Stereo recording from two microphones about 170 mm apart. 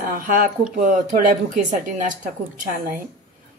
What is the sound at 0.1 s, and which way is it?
Speech, 55° right (ahead or behind).